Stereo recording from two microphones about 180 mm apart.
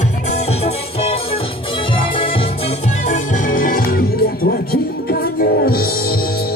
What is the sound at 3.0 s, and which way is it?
Music, 45° left (ahead or behind).